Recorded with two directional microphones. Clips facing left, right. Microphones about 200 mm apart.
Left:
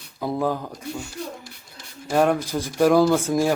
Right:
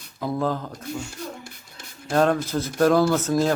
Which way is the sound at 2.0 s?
10° left (ahead or behind).